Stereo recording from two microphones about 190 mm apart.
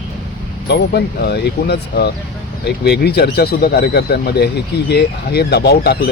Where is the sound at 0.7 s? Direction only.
60° left (ahead or behind).